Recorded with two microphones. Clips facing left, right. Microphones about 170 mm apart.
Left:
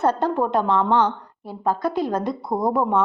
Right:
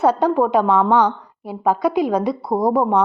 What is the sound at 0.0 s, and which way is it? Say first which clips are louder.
A woman's voice: right 4 dB; 10° right (ahead or behind).